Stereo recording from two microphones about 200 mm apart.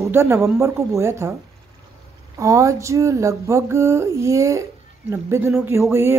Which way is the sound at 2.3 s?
15° right (ahead or behind).